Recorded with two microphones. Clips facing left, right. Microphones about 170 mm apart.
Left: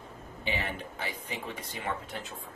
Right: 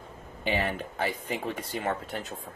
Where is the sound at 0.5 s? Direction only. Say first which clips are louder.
Right 6 dB; 45° right (ahead or behind).